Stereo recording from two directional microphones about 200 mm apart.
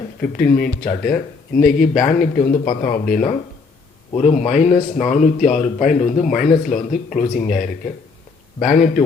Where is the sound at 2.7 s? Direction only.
45° left (ahead or behind).